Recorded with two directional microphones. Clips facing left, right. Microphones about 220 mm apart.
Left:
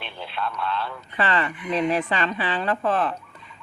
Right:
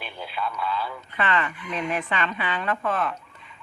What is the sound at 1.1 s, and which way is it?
Speech, 35° left (ahead or behind).